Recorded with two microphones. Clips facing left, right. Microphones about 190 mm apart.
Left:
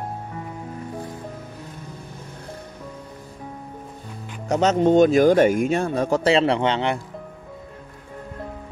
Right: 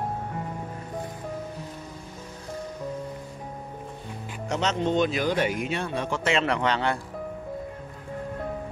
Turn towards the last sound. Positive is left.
turn(degrees=20)  # may be behind; listen again after turning